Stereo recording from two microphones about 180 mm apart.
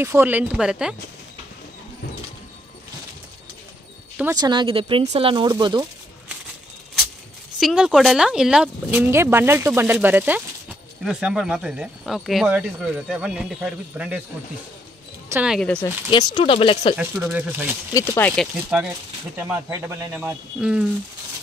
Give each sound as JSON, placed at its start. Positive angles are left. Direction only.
{"t": 0.0, "sound": "speech", "side_deg": -10}
{"t": 4.4, "sound": "speech", "side_deg": -25}
{"t": 7.5, "sound": "speech", "side_deg": -5}
{"t": 15.2, "sound": "speech", "side_deg": -15}
{"t": 15.5, "sound": "speech", "side_deg": 5}
{"t": 16.1, "sound": "speech", "side_deg": 25}
{"t": 16.9, "sound": "speech", "side_deg": -10}
{"t": 17.9, "sound": "speech", "side_deg": 15}
{"t": 18.3, "sound": "speech", "side_deg": 0}
{"t": 19.3, "sound": "speech", "side_deg": -10}